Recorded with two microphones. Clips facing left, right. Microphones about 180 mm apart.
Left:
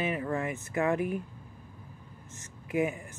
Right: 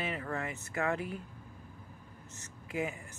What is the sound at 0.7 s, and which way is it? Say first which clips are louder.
Speech: left 6 dB; 20° left (ahead or behind).